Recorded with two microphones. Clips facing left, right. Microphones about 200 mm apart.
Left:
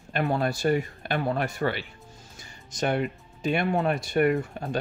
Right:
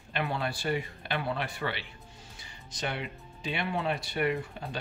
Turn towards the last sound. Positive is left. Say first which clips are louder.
# left 7 dB
turn(degrees=50)  # may be behind; listen again after turning